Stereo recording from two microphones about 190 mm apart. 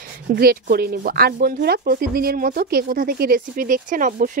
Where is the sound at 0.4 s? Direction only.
55° right (ahead or behind).